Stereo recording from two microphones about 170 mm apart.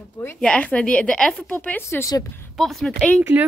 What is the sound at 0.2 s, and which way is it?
A woman's voice, 10° left (ahead or behind).